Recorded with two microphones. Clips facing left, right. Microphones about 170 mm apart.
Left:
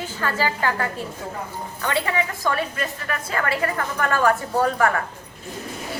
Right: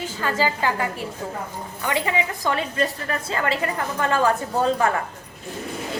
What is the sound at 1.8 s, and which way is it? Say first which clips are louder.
Speech: even; 15° right (ahead or behind).